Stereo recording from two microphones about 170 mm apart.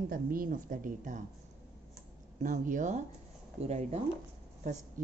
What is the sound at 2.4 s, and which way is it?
A woman's voice, 50° right (ahead or behind).